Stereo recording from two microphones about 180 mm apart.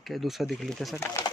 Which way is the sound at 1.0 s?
15° left (ahead or behind).